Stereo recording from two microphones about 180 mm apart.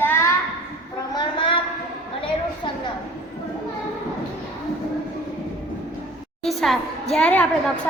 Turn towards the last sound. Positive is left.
turn(degrees=5)  # may be behind; listen again after turning